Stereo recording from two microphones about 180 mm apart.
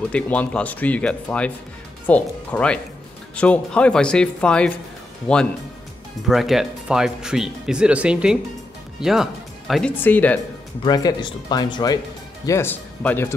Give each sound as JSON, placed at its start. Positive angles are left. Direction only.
{"t": 0.1, "sound": "speech", "side_deg": 5}
{"t": 10.8, "sound": "speech", "side_deg": 20}